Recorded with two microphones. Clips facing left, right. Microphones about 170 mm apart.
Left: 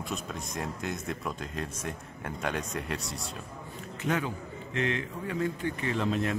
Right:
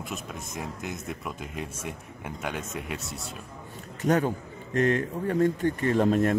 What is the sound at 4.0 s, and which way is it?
A man's voice, 40° right (ahead or behind).